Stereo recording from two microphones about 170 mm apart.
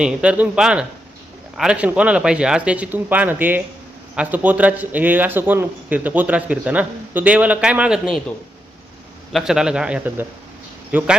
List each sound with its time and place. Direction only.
0.0 s a man's voice: 5° right (ahead or behind)
9.3 s a man's voice: 5° right (ahead or behind)